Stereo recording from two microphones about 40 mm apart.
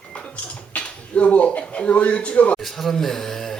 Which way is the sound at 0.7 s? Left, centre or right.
Left.